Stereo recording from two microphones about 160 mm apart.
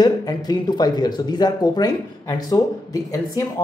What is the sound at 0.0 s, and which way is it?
Speech, 25° left (ahead or behind).